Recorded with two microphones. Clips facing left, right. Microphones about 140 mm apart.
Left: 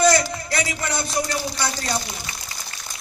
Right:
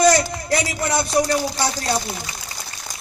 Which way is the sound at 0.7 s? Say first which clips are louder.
Right 5 dB; 35° right (ahead or behind).